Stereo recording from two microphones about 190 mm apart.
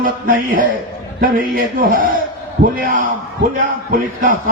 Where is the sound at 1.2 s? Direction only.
50° right (ahead or behind).